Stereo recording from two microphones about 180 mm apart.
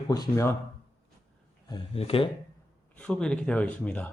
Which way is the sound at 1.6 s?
30° left (ahead or behind).